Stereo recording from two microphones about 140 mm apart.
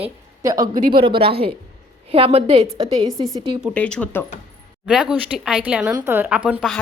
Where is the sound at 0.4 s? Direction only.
25° right (ahead or behind).